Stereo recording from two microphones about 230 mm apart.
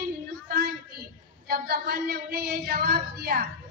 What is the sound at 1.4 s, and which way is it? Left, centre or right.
A woman's voice, right.